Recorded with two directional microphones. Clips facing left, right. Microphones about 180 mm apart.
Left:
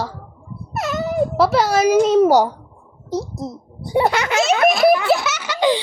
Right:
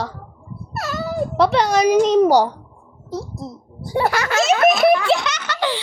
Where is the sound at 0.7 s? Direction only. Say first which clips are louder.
Left 3 dB; 20° left (ahead or behind).